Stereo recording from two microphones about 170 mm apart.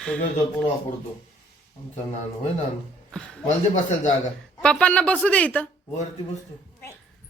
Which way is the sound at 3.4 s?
45° left (ahead or behind).